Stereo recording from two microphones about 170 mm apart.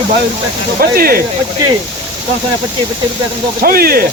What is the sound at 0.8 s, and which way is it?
Speech, 60° right (ahead or behind).